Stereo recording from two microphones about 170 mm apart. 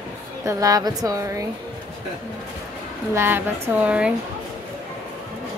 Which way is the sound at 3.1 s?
10° right (ahead or behind).